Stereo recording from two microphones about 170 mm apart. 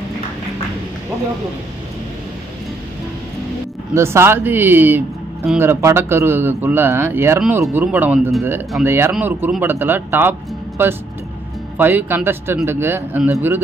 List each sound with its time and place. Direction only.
3.9 s speech: 15° right (ahead or behind)